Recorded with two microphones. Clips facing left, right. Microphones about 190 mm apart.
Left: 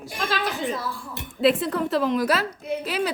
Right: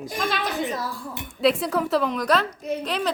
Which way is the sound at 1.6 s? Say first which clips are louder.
Even; centre (ahead or behind).